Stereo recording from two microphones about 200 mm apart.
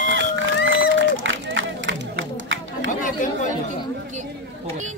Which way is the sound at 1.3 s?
70° right (ahead or behind).